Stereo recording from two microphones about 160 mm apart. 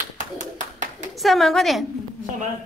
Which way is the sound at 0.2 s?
50° right (ahead or behind).